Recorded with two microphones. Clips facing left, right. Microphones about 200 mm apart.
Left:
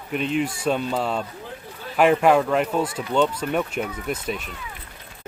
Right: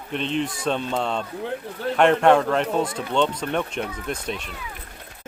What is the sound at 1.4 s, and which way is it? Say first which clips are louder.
Speech: right 9 dB; 70° right (ahead or behind).